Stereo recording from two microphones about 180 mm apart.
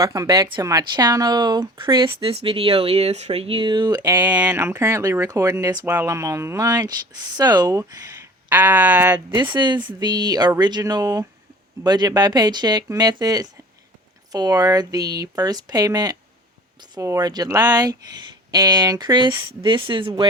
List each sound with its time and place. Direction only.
0.0 s speech: 20° right (ahead or behind)
9.1 s speech: 25° right (ahead or behind)